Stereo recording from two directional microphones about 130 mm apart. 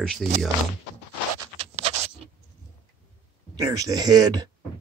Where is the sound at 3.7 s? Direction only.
30° right (ahead or behind).